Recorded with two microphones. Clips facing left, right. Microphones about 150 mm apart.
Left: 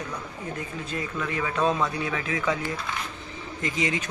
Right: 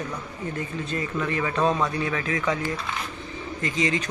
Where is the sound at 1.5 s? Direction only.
15° right (ahead or behind).